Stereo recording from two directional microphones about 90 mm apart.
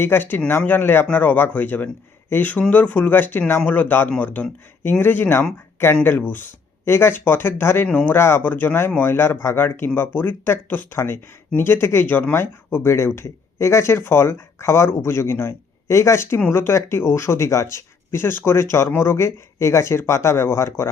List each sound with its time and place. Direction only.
0.0 s speech: 25° left (ahead or behind)